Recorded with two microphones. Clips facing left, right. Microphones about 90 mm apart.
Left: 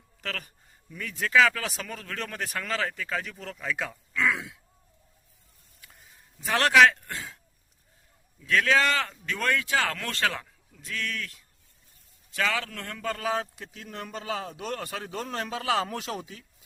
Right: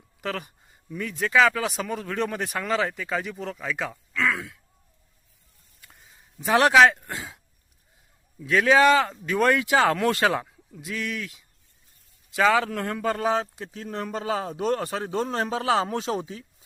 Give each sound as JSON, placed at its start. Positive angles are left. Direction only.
{"t": 0.2, "sound": "speech", "side_deg": -10}
{"t": 5.8, "sound": "a sound", "side_deg": 0}
{"t": 6.5, "sound": "speech", "side_deg": -15}
{"t": 8.4, "sound": "speech", "side_deg": -15}
{"t": 12.4, "sound": "a man's voice", "side_deg": -20}